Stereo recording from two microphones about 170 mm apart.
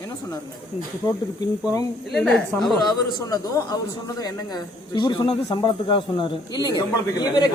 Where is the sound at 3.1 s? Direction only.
20° left (ahead or behind).